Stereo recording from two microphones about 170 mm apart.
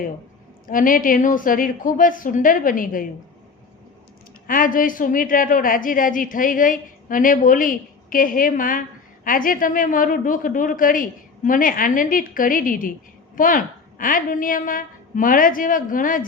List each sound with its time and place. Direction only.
0.7 s a woman's voice: 55° left (ahead or behind)
4.4 s a woman's voice: 55° left (ahead or behind)